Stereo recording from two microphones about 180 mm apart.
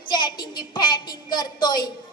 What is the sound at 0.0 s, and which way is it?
A woman's voice, 25° left (ahead or behind).